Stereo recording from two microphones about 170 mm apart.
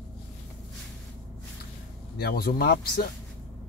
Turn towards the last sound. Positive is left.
turn(degrees=70)  # may be behind; listen again after turning